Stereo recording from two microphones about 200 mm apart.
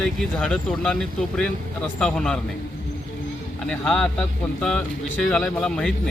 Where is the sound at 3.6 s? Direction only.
5° left (ahead or behind).